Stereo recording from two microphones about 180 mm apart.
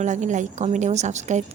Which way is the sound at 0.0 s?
45° right (ahead or behind).